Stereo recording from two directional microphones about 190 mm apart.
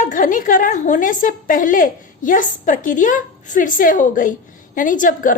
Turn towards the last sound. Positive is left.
turn(degrees=45)  # may be behind; listen again after turning